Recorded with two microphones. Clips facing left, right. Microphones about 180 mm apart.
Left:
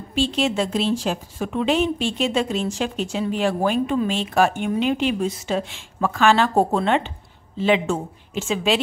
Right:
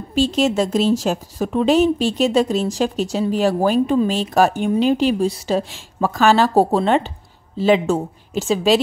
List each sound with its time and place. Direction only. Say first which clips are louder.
0.1 s a woman's voice: right 4 dB; 40° right (ahead or behind)